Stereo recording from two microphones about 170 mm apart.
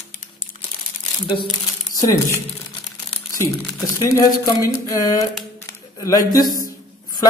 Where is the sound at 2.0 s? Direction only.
15° left (ahead or behind).